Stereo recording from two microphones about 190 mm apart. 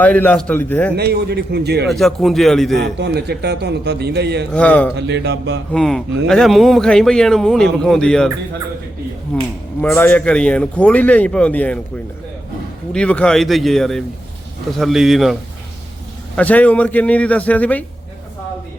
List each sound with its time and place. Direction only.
0.0 s a man's voice: 10° left (ahead or behind)
0.9 s a man's voice: 55° right (ahead or behind)
1.9 s speech: centre (ahead or behind)
2.7 s a man's voice: 60° right (ahead or behind)
4.5 s a man's voice: 5° left (ahead or behind)
4.9 s a man's voice: 65° right (ahead or behind)
5.7 s speech: 5° left (ahead or behind)
9.8 s a man's voice: 10° left (ahead or behind)
12.9 s a man's voice: 5° left (ahead or behind)